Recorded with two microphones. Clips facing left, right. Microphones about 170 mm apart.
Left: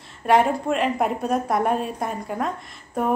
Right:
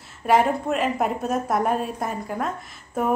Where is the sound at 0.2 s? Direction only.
Centre (ahead or behind).